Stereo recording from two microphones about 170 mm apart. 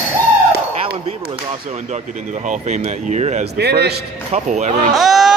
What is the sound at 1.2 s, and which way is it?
Speech, 45° right (ahead or behind).